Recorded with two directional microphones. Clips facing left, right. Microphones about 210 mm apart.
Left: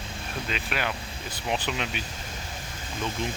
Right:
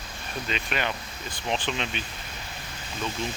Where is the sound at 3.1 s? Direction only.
50° left (ahead or behind).